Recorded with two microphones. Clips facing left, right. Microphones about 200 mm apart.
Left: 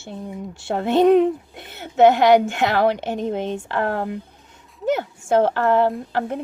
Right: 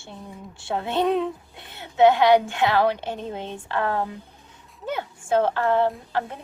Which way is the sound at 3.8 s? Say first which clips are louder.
Left 1 dB; 65° left (ahead or behind).